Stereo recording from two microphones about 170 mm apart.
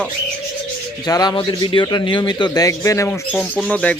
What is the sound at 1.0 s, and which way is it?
A man's voice, 20° left (ahead or behind).